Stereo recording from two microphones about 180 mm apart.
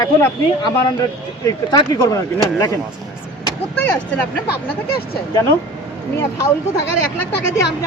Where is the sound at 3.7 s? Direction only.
10° left (ahead or behind).